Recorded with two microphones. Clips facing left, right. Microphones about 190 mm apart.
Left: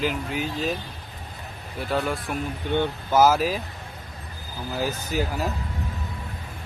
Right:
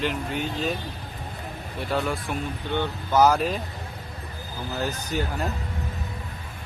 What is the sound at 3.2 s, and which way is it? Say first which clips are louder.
Speech: left 1 dB; 5° left (ahead or behind).